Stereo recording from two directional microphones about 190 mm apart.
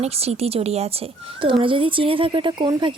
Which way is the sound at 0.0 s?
35° right (ahead or behind).